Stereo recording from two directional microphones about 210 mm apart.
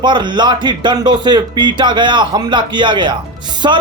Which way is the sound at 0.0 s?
20° right (ahead or behind).